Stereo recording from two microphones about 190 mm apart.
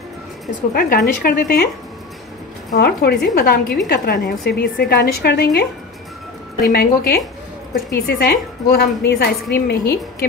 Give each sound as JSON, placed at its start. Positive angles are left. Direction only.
{"t": 0.7, "sound": "speech", "side_deg": 50}
{"t": 2.7, "sound": "a woman's voice", "side_deg": 55}
{"t": 6.7, "sound": "a woman's voice", "side_deg": 55}